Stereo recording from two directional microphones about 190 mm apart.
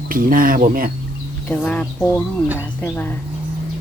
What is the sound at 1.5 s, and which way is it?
Speech, 5° left (ahead or behind).